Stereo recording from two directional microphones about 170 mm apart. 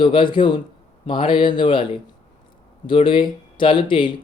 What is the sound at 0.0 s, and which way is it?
A man's voice, 30° left (ahead or behind).